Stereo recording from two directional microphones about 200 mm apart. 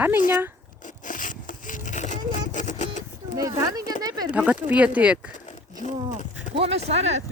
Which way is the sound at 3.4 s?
15° right (ahead or behind).